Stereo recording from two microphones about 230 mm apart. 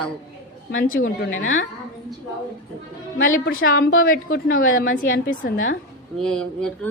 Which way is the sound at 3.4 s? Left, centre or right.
Left.